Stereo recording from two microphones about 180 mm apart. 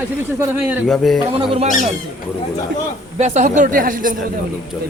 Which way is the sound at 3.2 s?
40° right (ahead or behind).